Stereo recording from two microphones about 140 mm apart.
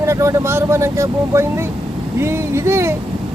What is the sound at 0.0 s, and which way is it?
Speech, 20° right (ahead or behind).